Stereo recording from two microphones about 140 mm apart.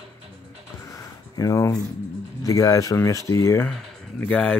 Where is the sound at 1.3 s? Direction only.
25° left (ahead or behind).